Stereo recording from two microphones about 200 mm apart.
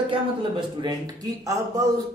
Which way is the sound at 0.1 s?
25° right (ahead or behind).